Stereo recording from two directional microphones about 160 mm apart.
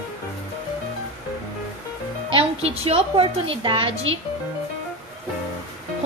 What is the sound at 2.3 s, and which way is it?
A woman's voice, 35° right (ahead or behind).